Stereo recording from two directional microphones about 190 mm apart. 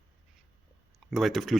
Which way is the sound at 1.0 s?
Centre (ahead or behind).